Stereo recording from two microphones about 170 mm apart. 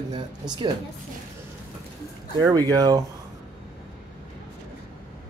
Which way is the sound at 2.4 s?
20° right (ahead or behind).